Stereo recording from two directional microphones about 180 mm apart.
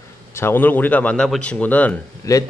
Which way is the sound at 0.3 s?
15° left (ahead or behind).